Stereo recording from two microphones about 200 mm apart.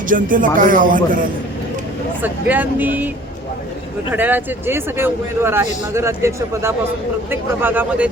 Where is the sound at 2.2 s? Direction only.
10° right (ahead or behind).